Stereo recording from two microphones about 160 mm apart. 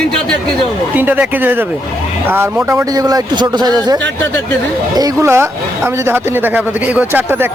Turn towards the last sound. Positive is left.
turn(degrees=-10)  # may be behind; listen again after turning